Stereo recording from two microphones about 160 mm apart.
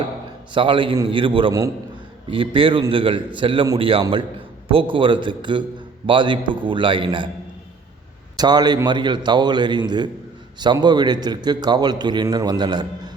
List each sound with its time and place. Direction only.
0.5 s a man's voice: 30° right (ahead or behind)
8.4 s a man's voice: 25° right (ahead or behind)